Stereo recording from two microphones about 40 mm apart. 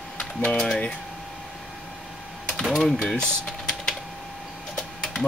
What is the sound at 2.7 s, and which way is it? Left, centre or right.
Speech, centre.